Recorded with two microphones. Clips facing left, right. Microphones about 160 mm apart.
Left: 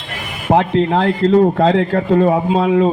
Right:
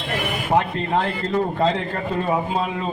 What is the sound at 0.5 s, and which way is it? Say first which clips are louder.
A man's voice: left 7 dB; 75° left (ahead or behind).